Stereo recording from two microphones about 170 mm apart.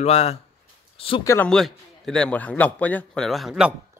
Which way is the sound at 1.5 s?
5° left (ahead or behind).